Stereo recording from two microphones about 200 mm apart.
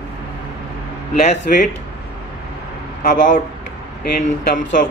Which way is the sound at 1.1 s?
35° left (ahead or behind).